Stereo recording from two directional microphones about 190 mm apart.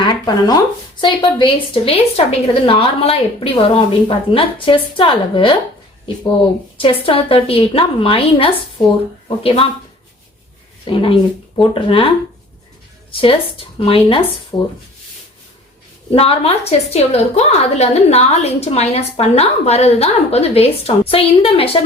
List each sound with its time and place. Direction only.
0.0 s a woman's voice: 25° left (ahead or behind)
6.7 s a woman's voice: 30° left (ahead or behind)
10.8 s a woman's voice: 25° left (ahead or behind)
13.1 s a sound: 30° left (ahead or behind)
13.7 s a woman's voice: 30° left (ahead or behind)
16.1 s a woman's voice: 30° left (ahead or behind)